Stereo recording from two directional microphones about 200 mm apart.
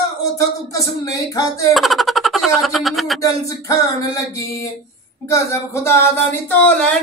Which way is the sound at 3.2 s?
15° left (ahead or behind).